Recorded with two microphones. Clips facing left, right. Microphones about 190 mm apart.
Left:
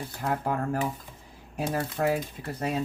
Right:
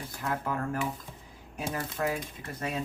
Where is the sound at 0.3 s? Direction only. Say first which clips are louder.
Left 4 dB; 40° left (ahead or behind).